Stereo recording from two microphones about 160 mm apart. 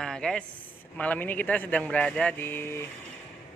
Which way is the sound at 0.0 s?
5° left (ahead or behind).